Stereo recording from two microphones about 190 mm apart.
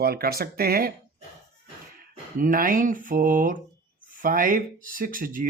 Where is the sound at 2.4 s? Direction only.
45° right (ahead or behind).